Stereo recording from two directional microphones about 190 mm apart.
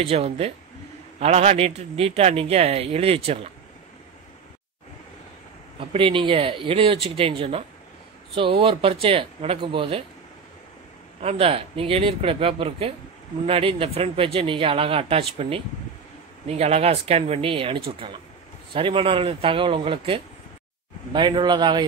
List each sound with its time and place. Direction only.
0.0 s a man's voice: 35° right (ahead or behind)
5.8 s speech: 30° right (ahead or behind)
11.1 s a man's voice: 30° right (ahead or behind)